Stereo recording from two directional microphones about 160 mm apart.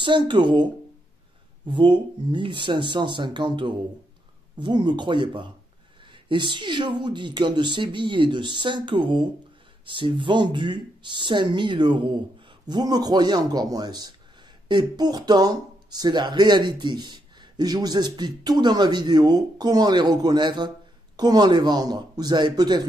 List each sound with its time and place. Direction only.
0.0 s speech: 30° right (ahead or behind)
1.7 s speech: 30° right (ahead or behind)